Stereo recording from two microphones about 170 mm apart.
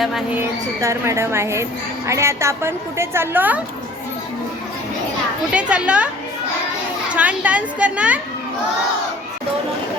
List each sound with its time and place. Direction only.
0.3 s a woman's voice: 15° right (ahead or behind)
5.5 s a woman's voice: 5° right (ahead or behind)
7.1 s a woman's voice: 10° right (ahead or behind)